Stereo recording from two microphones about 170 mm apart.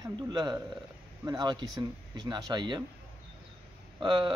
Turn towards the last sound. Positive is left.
turn(degrees=-25)  # may be behind; listen again after turning